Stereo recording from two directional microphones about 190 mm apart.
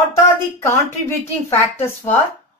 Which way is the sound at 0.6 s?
10° left (ahead or behind).